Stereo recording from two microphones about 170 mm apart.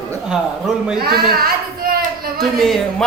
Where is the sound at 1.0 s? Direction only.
65° right (ahead or behind).